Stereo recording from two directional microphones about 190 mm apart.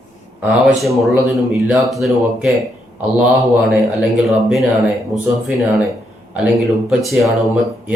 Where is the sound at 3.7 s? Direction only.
Centre (ahead or behind).